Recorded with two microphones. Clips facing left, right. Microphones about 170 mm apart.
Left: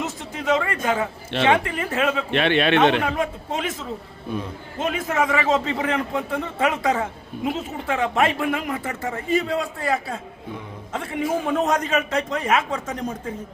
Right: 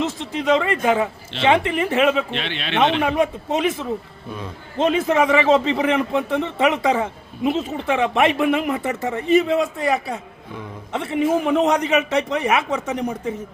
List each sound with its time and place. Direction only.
0.3 s a man's voice: 20° right (ahead or behind)
2.3 s a man's voice: 55° left (ahead or behind)
3.0 s a man's voice: 20° right (ahead or behind)
4.8 s a man's voice: 25° right (ahead or behind)